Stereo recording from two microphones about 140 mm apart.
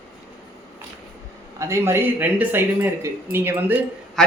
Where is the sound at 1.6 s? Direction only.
20° right (ahead or behind).